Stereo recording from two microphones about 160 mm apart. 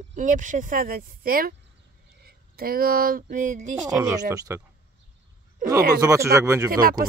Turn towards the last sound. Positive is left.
turn(degrees=-65)  # may be behind; listen again after turning